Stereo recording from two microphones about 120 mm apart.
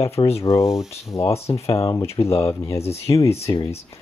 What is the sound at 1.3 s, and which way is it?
Speech, 55° left (ahead or behind).